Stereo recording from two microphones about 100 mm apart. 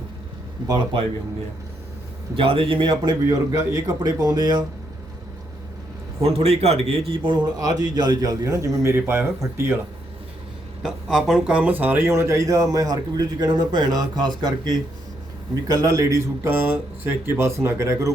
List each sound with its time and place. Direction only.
0.6 s speech: 50° right (ahead or behind)
2.3 s a man's voice: 65° right (ahead or behind)
3.2 s speech: 30° right (ahead or behind)
6.2 s speech: 90° right; by 7.4 s 55° right (ahead or behind)
7.6 s speech: 45° right (ahead or behind); by 9.7 s 25° right (ahead or behind)
10.8 s speech: 5° right (ahead or behind); by 18.1 s 30° right (ahead or behind)